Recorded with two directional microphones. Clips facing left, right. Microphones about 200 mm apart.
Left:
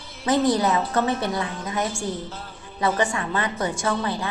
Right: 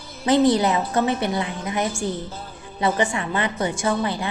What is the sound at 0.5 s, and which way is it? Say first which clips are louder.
A woman's voice: right 1 dB; 15° right (ahead or behind).